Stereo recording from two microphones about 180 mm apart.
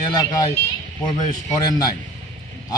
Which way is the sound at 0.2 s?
20° left (ahead or behind).